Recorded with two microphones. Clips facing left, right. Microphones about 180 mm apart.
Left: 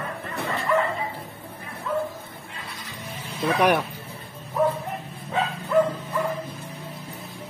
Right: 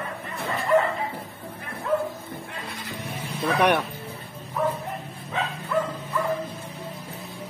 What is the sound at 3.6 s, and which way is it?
Speech, centre (ahead or behind).